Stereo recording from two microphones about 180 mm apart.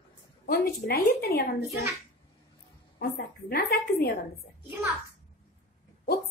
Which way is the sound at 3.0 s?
60° left (ahead or behind).